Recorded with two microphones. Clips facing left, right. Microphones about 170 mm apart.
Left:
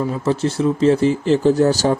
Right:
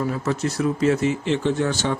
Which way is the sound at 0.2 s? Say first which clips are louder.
Left 5 dB; 30° left (ahead or behind).